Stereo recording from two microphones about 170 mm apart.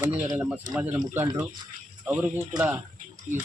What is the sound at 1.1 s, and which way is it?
Speech, 10° right (ahead or behind).